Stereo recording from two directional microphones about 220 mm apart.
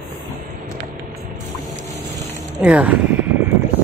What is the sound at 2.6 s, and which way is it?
Speech, 5° right (ahead or behind).